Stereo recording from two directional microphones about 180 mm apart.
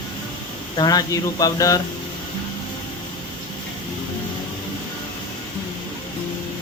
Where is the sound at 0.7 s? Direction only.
20° left (ahead or behind).